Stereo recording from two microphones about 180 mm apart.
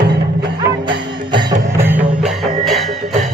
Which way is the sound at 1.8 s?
10° right (ahead or behind).